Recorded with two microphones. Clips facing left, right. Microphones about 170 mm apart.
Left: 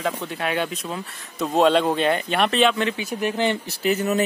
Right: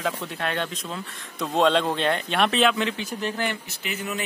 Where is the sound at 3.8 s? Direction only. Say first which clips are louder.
Left 11 dB; 40° left (ahead or behind).